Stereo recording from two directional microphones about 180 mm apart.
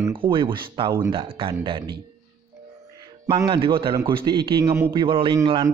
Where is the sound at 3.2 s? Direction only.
25° right (ahead or behind).